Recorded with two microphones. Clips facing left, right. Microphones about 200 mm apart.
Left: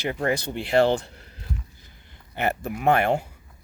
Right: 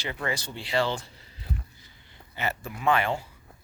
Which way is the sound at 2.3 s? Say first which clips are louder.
Left 6 dB; 60° left (ahead or behind).